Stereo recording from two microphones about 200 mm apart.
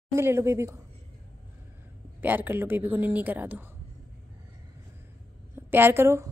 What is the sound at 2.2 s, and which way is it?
A woman's voice, 10° right (ahead or behind).